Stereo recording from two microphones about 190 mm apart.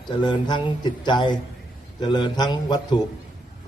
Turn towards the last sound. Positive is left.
turn(degrees=20)  # may be behind; listen again after turning